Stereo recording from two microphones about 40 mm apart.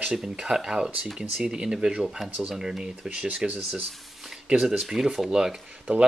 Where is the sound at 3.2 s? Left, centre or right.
Right.